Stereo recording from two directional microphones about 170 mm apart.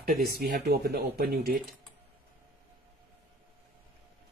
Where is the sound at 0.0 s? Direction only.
65° right (ahead or behind).